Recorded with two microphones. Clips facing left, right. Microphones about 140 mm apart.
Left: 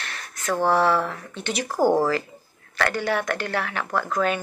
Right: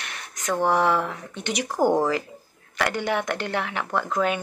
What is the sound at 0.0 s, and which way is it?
Speech, 15° right (ahead or behind).